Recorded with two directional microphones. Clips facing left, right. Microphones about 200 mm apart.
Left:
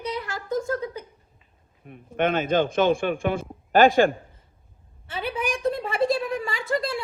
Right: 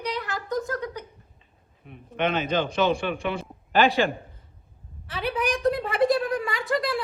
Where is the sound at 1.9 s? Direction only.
50° left (ahead or behind).